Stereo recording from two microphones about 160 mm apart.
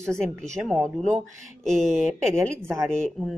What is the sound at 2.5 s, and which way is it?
Speech, 15° right (ahead or behind).